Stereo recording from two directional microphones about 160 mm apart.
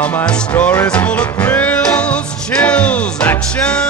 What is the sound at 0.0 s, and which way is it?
Music, 5° left (ahead or behind).